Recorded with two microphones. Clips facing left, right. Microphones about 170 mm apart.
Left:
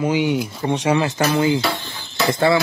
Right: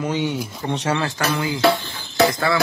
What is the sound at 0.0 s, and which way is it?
Speech, 10° left (ahead or behind).